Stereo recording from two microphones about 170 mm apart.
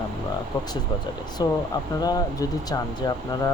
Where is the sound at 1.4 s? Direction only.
25° left (ahead or behind).